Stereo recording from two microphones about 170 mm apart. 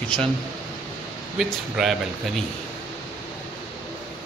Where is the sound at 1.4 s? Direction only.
5° right (ahead or behind).